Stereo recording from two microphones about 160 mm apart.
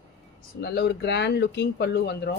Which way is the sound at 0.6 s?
90° left.